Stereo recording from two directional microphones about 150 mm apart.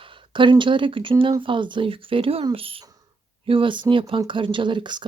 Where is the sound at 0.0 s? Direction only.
35° right (ahead or behind).